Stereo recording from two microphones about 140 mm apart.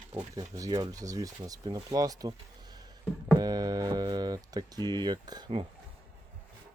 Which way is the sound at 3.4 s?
30° right (ahead or behind).